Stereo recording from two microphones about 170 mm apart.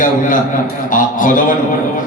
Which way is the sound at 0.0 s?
50° left (ahead or behind).